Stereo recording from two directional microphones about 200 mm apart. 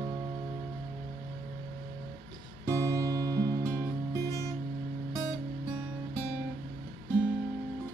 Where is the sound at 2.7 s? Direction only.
15° right (ahead or behind).